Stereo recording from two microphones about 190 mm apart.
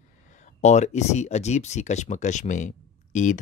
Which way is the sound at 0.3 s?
40° left (ahead or behind).